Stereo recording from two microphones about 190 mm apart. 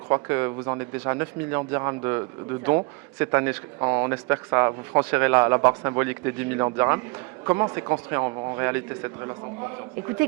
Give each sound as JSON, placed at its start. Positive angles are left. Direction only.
{"t": 0.1, "sound": "speech", "side_deg": -15}